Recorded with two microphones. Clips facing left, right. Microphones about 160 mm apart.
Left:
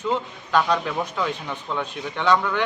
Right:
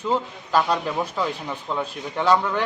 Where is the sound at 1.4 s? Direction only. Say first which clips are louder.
Right 1 dB; 5° right (ahead or behind).